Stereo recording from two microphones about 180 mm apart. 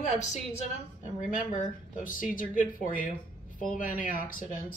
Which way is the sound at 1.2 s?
45° left (ahead or behind).